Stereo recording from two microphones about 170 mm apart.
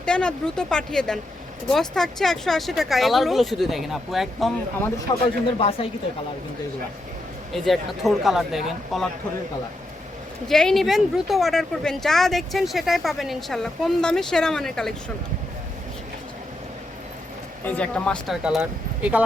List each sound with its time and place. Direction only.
0.0 s speech: 5° left (ahead or behind)
5.2 s speech: 35° left (ahead or behind)
7.5 s speech: centre (ahead or behind)
10.5 s speech: 5° left (ahead or behind)
17.7 s speech: 5° left (ahead or behind)
18.4 s speech: 5° right (ahead or behind)